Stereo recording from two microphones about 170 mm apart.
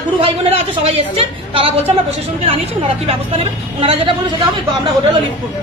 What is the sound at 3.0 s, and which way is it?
A woman's voice, 35° right (ahead or behind).